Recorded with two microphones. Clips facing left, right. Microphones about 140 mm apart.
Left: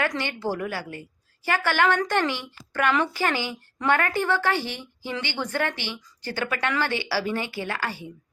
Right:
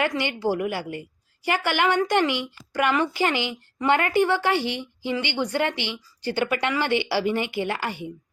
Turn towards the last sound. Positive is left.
turn(degrees=-20)  # may be behind; listen again after turning